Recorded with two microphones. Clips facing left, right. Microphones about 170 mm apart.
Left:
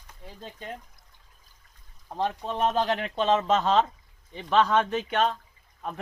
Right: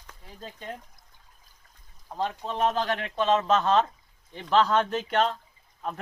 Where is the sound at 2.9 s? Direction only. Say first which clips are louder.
Left 1 dB; 20° left (ahead or behind).